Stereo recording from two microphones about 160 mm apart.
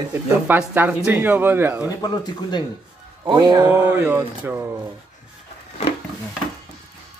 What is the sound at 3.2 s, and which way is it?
Speech, 25° right (ahead or behind).